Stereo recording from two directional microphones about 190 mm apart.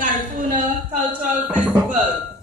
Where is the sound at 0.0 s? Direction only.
45° right (ahead or behind).